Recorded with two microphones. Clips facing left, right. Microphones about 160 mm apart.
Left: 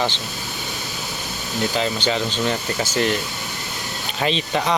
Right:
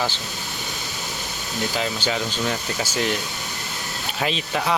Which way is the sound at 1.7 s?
5° right (ahead or behind).